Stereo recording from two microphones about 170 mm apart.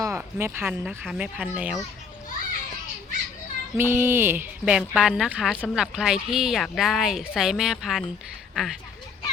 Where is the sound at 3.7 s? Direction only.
15° right (ahead or behind).